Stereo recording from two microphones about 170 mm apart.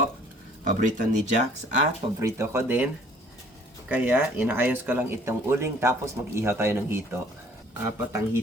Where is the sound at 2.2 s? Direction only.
15° right (ahead or behind).